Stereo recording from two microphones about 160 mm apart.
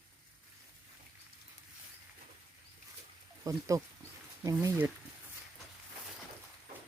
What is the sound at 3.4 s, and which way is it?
Speech, 20° right (ahead or behind).